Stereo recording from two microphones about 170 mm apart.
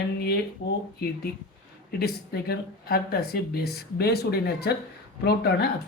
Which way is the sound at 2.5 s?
65° left (ahead or behind).